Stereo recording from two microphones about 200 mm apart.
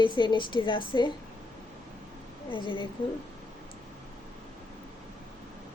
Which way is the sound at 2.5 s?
25° left (ahead or behind).